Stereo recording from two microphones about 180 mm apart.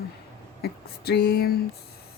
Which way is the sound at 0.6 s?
60° left (ahead or behind).